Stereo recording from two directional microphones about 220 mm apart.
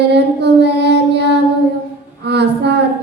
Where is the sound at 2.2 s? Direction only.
50° right (ahead or behind).